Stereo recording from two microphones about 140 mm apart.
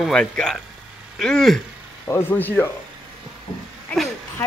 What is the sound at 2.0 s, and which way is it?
Speech, 15° left (ahead or behind).